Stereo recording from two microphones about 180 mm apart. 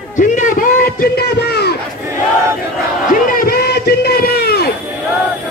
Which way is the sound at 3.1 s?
50° left (ahead or behind).